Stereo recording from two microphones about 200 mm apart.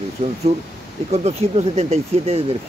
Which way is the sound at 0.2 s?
30° right (ahead or behind).